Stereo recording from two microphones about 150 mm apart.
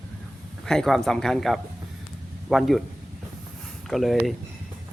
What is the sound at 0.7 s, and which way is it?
Speech, centre (ahead or behind).